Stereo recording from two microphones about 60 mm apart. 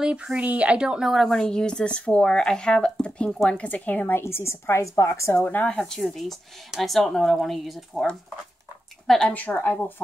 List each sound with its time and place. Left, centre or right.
0.0 s speech: centre
1.4 s a woman's voice: centre; by 4.2 s left
4.2 s a woman's voice: left
5.4 s a woman's voice: left
6.7 s speech: centre
9.3 s a woman's voice: left